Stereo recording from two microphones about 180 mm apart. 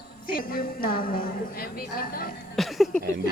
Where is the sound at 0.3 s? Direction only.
55° left (ahead or behind).